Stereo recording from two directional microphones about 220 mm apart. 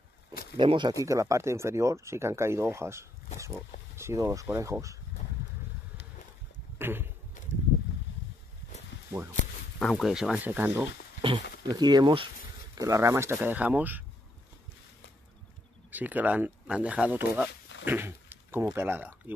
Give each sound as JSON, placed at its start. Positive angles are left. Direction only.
{"t": 0.6, "sound": "speech", "side_deg": -20}
{"t": 6.8, "sound": "a sound", "side_deg": -10}
{"t": 7.4, "sound": "a sound", "side_deg": 35}
{"t": 9.8, "sound": "speech", "side_deg": 0}
{"t": 11.6, "sound": "speech", "side_deg": -20}
{"t": 15.9, "sound": "speech", "side_deg": -5}